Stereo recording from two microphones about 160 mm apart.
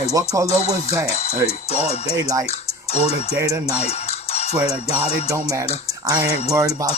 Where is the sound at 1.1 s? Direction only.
40° left (ahead or behind).